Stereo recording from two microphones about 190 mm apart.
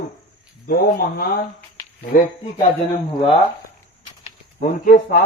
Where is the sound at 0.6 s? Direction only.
55° left (ahead or behind).